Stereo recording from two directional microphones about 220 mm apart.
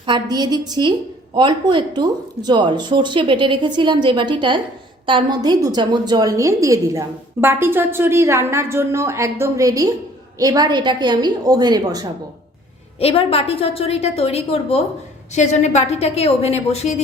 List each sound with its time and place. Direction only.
0.0 s a woman's voice: 20° right (ahead or behind)
13.0 s a woman's voice: 25° left (ahead or behind)